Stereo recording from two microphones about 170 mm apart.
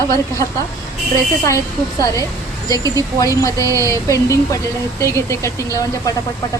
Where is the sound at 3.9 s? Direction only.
20° left (ahead or behind).